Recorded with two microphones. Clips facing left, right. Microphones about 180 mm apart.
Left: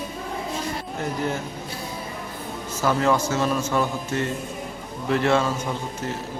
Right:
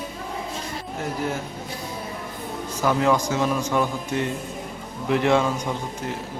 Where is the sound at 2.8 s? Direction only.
15° right (ahead or behind).